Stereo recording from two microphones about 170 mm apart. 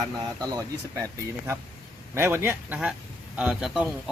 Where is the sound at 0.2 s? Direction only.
20° right (ahead or behind).